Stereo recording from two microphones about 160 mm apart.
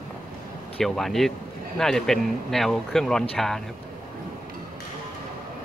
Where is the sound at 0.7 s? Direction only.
Centre (ahead or behind).